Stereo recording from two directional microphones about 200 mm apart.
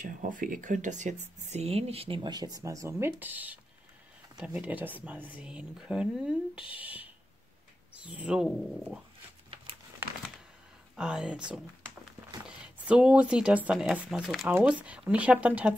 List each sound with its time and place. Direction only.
0.0 s speech: 40° right (ahead or behind); by 6.3 s 5° right (ahead or behind)
6.5 s speech: 25° left (ahead or behind)
6.8 s speech: 5° right (ahead or behind)
11.0 s speech: 5° right (ahead or behind)